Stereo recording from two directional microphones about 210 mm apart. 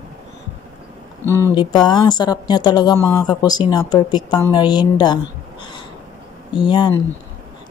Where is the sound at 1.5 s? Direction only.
20° left (ahead or behind).